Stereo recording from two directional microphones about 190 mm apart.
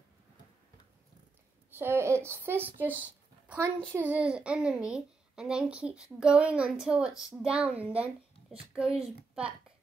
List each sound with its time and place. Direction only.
1.7 s a child's voice: 10° right (ahead or behind)